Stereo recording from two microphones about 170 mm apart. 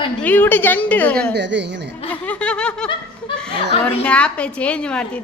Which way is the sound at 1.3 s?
90° right.